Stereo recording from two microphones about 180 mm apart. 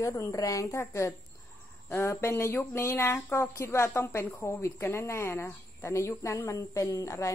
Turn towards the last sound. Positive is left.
turn(degrees=15)  # may be behind; listen again after turning